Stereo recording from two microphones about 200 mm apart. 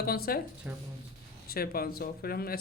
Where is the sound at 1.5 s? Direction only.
50° left (ahead or behind).